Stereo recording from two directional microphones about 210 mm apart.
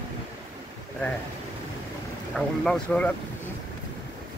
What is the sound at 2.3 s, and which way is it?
Speech, 5° left (ahead or behind).